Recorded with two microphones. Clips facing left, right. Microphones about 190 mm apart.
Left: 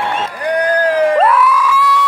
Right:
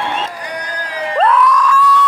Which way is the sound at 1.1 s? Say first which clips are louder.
Left 1 dB; 5° left (ahead or behind).